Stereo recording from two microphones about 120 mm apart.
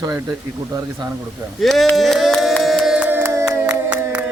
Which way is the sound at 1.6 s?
Centre (ahead or behind).